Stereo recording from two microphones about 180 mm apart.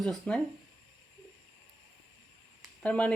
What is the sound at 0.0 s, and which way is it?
Speech, 5° left (ahead or behind).